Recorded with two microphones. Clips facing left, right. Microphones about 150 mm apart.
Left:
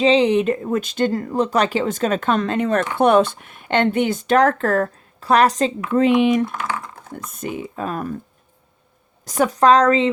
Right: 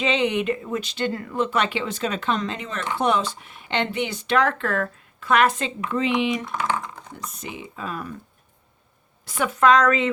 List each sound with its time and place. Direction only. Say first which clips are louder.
0.0 s speech: left 7 dB; 35° left (ahead or behind)
5.9 s speech: left 7 dB; 50° left (ahead or behind)
9.2 s a woman's voice: left 4 dB; 40° left (ahead or behind)